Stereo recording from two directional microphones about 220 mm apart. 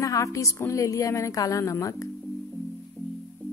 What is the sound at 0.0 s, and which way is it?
A woman's voice, 15° left (ahead or behind).